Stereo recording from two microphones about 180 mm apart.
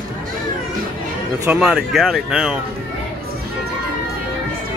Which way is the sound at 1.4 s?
5° right (ahead or behind).